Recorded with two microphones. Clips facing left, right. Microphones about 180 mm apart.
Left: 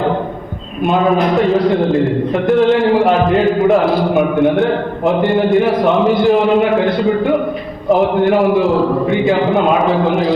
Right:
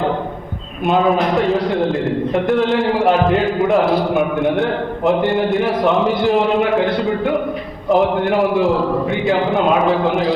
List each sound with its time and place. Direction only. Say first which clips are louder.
0.9 s a man's voice: left 2 dB; centre (ahead or behind)
7.9 s a man's voice: left 3 dB; centre (ahead or behind)